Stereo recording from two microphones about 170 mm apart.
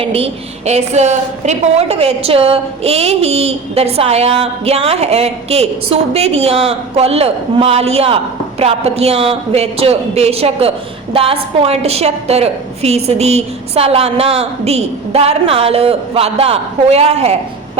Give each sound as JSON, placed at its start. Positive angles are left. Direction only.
{"t": 0.0, "sound": "a woman's voice", "side_deg": -35}